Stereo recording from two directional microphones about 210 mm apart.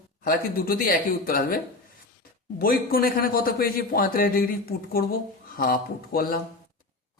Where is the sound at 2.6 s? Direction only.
45° left (ahead or behind).